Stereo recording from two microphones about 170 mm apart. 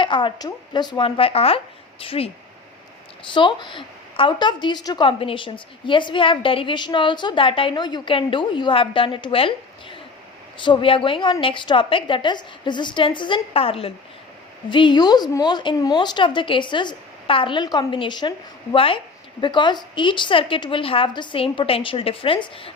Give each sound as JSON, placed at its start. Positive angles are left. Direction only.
{"t": 0.0, "sound": "a woman's voice", "side_deg": 30}
{"t": 3.3, "sound": "a woman's voice", "side_deg": 30}